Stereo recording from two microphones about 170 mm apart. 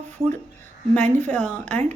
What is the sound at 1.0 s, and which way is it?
Speech, 45° right (ahead or behind).